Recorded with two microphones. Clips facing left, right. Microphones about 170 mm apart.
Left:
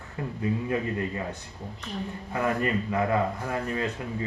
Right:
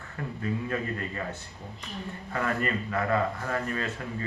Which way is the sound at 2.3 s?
15° left (ahead or behind).